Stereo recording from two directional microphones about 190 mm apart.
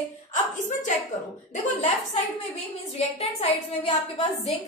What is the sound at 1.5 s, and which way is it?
Speech, 40° left (ahead or behind).